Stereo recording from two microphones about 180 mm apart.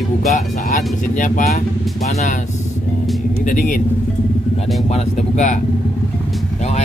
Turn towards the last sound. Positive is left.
turn(degrees=40)  # may be behind; listen again after turning